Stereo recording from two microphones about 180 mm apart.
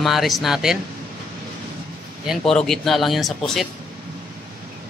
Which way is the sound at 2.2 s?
Centre (ahead or behind).